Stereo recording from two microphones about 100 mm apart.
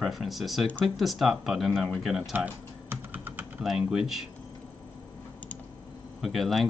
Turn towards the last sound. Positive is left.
turn(degrees=0)  # may be behind; listen again after turning